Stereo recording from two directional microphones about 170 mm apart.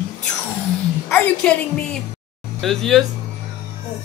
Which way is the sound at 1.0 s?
10° left (ahead or behind).